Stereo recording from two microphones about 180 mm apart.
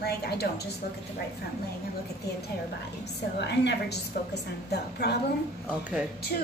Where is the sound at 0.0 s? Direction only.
65° left (ahead or behind).